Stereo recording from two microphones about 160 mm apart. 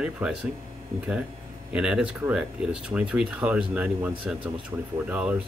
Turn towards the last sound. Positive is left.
turn(degrees=-5)  # may be behind; listen again after turning